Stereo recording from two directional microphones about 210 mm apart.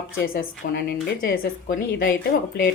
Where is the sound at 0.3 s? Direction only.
45° left (ahead or behind).